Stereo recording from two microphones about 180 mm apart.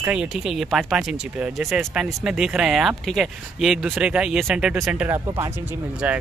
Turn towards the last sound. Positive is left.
turn(degrees=-10)  # may be behind; listen again after turning